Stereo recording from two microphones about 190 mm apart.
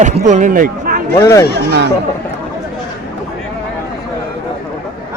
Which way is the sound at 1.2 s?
15° left (ahead or behind).